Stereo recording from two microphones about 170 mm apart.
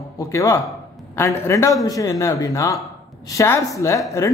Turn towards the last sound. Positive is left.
turn(degrees=20)  # may be behind; listen again after turning